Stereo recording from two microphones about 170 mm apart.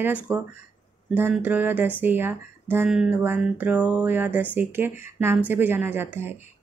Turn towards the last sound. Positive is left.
turn(degrees=-15)  # may be behind; listen again after turning